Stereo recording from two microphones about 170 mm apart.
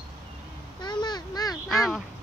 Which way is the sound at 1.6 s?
Centre (ahead or behind).